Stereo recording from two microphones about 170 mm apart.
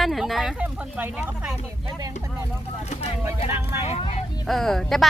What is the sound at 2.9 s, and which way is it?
Vehicle, 40° left (ahead or behind).